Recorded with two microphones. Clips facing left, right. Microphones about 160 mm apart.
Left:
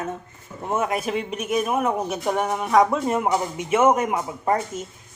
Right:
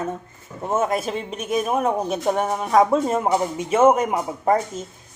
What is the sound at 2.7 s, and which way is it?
Speech, 25° right (ahead or behind).